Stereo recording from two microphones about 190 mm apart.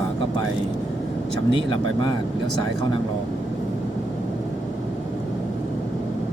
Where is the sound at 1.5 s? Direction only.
25° left (ahead or behind).